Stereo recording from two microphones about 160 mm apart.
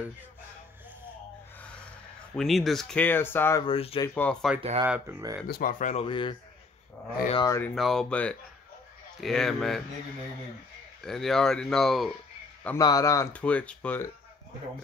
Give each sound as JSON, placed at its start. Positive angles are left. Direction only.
{"t": 2.3, "sound": "speech", "side_deg": 0}
{"t": 3.6, "sound": "speech", "side_deg": 35}
{"t": 4.1, "sound": "speech", "side_deg": 5}
{"t": 4.6, "sound": "speech", "side_deg": -35}
{"t": 4.8, "sound": "speech", "side_deg": -10}
{"t": 5.5, "sound": "speech", "side_deg": 60}
{"t": 6.0, "sound": "speech", "side_deg": 30}
{"t": 7.3, "sound": "speech", "side_deg": 20}
{"t": 7.6, "sound": "speech", "side_deg": 0}
{"t": 11.0, "sound": "speech", "side_deg": 0}
{"t": 12.7, "sound": "speech", "side_deg": 20}
{"t": 13.4, "sound": "speech", "side_deg": 10}